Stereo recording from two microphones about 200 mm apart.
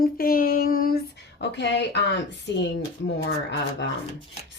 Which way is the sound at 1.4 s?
60° left (ahead or behind).